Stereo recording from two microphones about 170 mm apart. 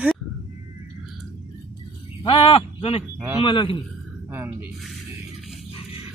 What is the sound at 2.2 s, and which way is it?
Speech, 30° left (ahead or behind).